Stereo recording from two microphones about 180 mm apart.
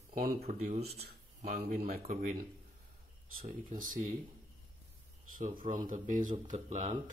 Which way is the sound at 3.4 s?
50° right (ahead or behind).